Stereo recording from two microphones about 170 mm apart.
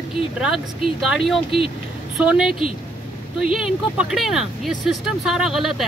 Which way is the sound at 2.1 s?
5° right (ahead or behind).